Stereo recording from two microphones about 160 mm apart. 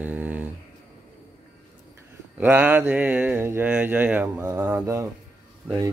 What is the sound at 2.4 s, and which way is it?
Speech, 10° right (ahead or behind).